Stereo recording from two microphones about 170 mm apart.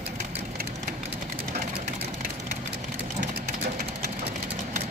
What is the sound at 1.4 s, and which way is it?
Vehicle, 60° right (ahead or behind).